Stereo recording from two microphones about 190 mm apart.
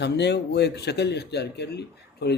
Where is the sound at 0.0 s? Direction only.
65° left (ahead or behind).